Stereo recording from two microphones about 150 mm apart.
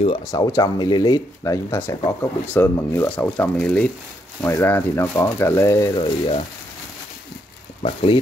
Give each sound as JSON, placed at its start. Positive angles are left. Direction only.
{"t": 0.3, "sound": "speech", "side_deg": 25}
{"t": 7.8, "sound": "speech", "side_deg": 40}